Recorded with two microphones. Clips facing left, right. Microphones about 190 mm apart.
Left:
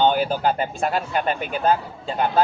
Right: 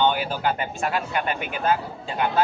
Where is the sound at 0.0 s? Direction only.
40° left (ahead or behind).